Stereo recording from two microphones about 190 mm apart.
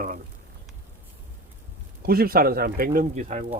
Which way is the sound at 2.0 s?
55° right (ahead or behind).